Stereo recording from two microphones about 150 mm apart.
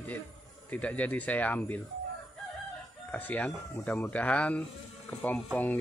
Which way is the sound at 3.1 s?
10° left (ahead or behind).